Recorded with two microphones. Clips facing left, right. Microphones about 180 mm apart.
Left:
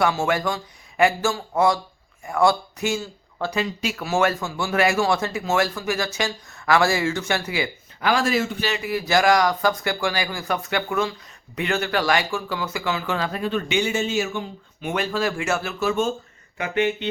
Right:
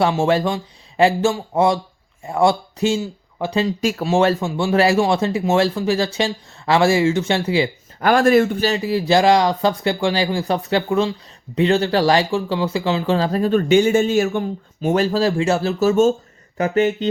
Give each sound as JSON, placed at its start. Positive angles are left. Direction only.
{"t": 0.0, "sound": "speech", "side_deg": -30}
{"t": 3.0, "sound": "speech", "side_deg": -15}
{"t": 3.8, "sound": "speech", "side_deg": -45}
{"t": 4.0, "sound": "speech", "side_deg": -30}
{"t": 8.0, "sound": "speech", "side_deg": -55}
{"t": 14.8, "sound": "speech", "side_deg": -40}